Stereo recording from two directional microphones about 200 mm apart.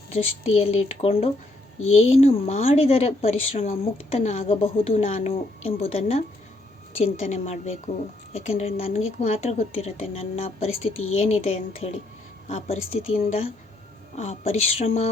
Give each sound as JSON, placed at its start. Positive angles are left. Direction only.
{"t": 0.1, "sound": "a woman's voice", "side_deg": 30}